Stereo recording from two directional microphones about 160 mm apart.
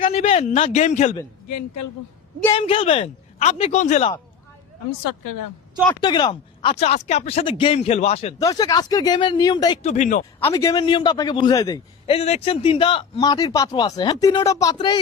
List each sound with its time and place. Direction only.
0.0 s speech: 40° left (ahead or behind)
2.6 s speech: 35° left (ahead or behind)
6.0 s speech: 30° left (ahead or behind)
8.4 s speech: 20° left (ahead or behind)
9.8 s speech: 50° left (ahead or behind)
10.5 s speech: 25° left (ahead or behind)
12.0 s speech: 40° left (ahead or behind)